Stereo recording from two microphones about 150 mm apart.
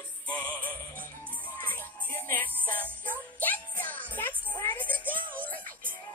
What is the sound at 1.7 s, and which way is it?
Music, 15° left (ahead or behind).